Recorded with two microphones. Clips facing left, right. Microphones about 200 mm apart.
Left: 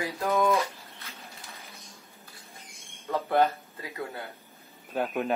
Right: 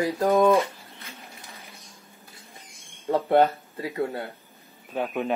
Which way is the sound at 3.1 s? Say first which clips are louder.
Right 5 dB; 30° right (ahead or behind).